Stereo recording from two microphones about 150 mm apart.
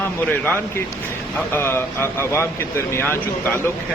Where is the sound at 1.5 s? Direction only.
15° left (ahead or behind).